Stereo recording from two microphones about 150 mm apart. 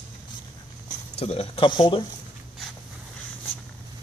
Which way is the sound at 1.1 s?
45° left (ahead or behind).